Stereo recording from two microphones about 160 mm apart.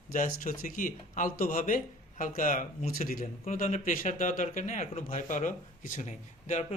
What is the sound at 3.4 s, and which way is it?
Speech, 50° left (ahead or behind).